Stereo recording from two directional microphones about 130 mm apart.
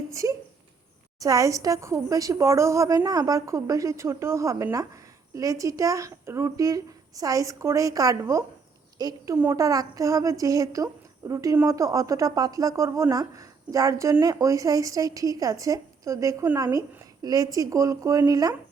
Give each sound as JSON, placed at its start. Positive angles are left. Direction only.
{"t": 0.1, "sound": "a woman's voice", "side_deg": -25}
{"t": 9.3, "sound": "speech", "side_deg": -20}